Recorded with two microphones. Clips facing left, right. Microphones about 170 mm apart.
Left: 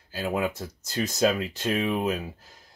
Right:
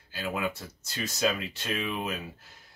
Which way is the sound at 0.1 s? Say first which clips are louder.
Left 4 dB; 40° left (ahead or behind).